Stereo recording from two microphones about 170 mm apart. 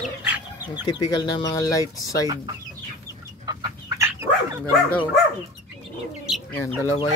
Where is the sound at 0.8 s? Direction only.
25° left (ahead or behind).